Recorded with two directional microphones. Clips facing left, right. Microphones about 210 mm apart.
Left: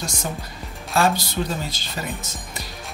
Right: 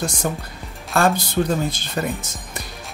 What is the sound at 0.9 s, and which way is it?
Speech, 50° right (ahead or behind).